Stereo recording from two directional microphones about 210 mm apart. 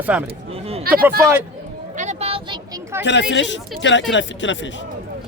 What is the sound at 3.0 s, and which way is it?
Speech, 60° left (ahead or behind).